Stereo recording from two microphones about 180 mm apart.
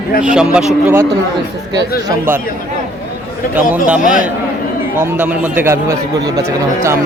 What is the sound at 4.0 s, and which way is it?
Speech, 45° left (ahead or behind).